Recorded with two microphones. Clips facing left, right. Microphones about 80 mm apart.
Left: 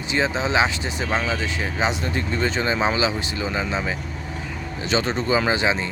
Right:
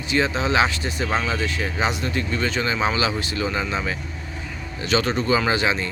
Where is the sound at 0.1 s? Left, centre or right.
Left.